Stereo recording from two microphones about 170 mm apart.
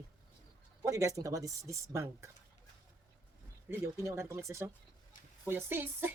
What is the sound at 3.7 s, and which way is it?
Speech, 15° right (ahead or behind).